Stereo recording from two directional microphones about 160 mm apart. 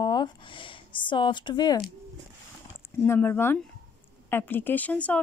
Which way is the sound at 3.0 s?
15° left (ahead or behind).